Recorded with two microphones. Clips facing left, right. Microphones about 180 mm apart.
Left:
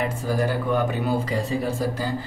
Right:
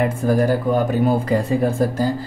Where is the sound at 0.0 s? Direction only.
50° right (ahead or behind).